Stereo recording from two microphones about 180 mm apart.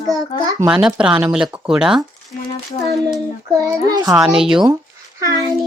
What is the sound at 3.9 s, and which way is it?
Speech, 20° right (ahead or behind).